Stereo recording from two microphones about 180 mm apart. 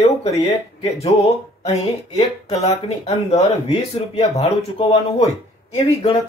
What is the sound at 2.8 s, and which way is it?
Speech, 35° left (ahead or behind).